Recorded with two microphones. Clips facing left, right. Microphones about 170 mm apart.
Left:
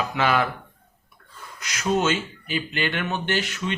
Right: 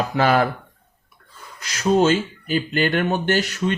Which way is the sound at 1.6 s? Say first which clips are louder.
Right 6 dB; 30° right (ahead or behind).